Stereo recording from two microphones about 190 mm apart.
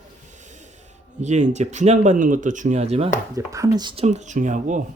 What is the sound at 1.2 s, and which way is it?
Speech, 40° right (ahead or behind).